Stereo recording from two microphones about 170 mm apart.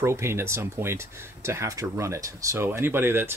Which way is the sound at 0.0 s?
15° right (ahead or behind).